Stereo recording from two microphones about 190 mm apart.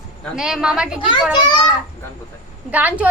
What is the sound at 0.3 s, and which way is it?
Speech, 5° right (ahead or behind).